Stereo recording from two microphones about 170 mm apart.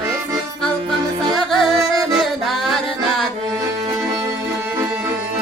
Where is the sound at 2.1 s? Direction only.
Centre (ahead or behind).